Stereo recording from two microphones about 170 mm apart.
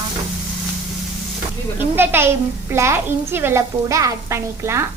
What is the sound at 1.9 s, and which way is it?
A woman's voice, 15° right (ahead or behind).